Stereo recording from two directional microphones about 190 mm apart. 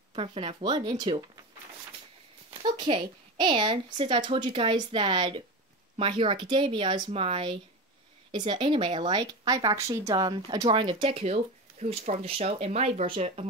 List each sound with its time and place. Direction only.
0.1 s speech: 30° right (ahead or behind)
2.5 s speech: 25° right (ahead or behind)